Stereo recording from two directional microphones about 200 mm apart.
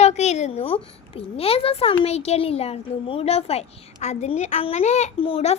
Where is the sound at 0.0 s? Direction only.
35° left (ahead or behind).